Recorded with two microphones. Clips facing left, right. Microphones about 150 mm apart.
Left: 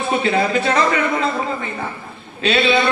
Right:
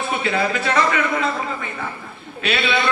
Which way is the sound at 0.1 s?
30° left (ahead or behind).